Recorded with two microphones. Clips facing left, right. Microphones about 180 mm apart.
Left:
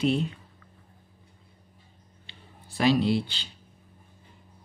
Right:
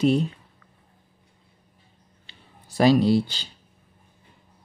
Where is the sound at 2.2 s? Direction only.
40° right (ahead or behind).